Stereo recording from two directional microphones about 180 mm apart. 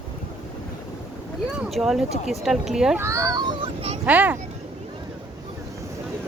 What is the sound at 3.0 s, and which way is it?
Speech, 15° right (ahead or behind).